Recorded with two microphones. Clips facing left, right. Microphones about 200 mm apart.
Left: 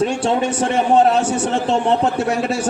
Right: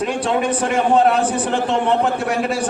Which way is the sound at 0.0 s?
30° left (ahead or behind).